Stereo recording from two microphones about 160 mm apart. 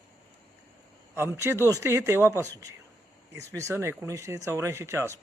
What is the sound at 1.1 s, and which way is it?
Speech, 15° right (ahead or behind).